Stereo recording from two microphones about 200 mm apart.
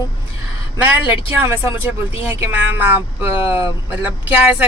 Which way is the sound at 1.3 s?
10° right (ahead or behind).